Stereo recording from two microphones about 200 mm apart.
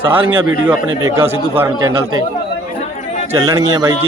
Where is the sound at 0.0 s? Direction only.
10° right (ahead or behind).